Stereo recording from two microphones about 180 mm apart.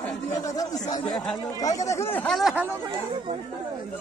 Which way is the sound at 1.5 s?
20° left (ahead or behind).